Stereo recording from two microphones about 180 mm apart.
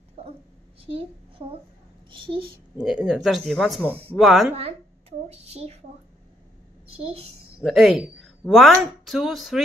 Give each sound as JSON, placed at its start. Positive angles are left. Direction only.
{"t": 0.2, "sound": "dog", "side_deg": -35}
{"t": 1.4, "sound": "a woman's voice", "side_deg": -30}
{"t": 2.8, "sound": "speech", "side_deg": -5}
{"t": 5.3, "sound": "a woman's voice", "side_deg": -35}
{"t": 7.0, "sound": "a woman's voice", "side_deg": -30}
{"t": 7.6, "sound": "speech", "side_deg": 0}